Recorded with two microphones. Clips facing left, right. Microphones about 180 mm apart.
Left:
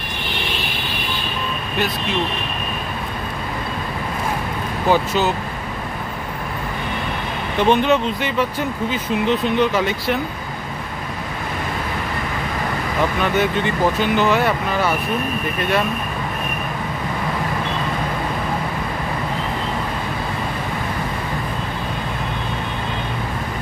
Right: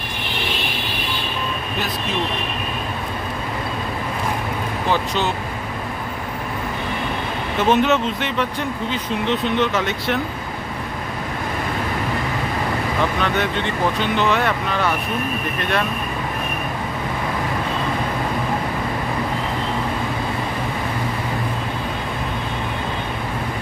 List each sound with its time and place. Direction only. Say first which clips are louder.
4.8 s speech: left 4 dB; 5° left (ahead or behind)
7.6 s speech: left 1 dB; centre (ahead or behind)
13.2 s speech: left 2 dB; 5° left (ahead or behind)